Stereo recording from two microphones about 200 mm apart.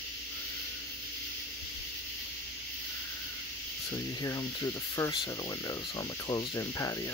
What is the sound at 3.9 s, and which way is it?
Speech, 20° left (ahead or behind).